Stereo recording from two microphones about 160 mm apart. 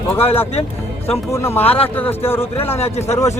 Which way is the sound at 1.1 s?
15° left (ahead or behind).